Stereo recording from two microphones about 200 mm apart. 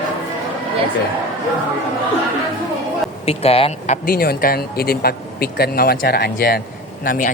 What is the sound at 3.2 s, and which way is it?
Speech, 30° left (ahead or behind).